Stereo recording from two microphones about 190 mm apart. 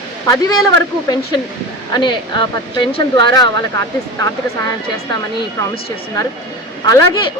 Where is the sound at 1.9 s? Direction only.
25° left (ahead or behind).